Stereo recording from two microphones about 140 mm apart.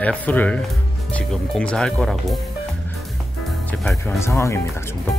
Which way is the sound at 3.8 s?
5° left (ahead or behind).